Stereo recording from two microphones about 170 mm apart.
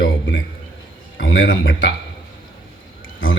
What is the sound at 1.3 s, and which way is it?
Speech, 90° left.